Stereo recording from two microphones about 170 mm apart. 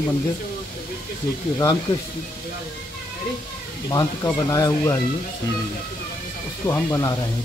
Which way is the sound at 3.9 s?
20° left (ahead or behind).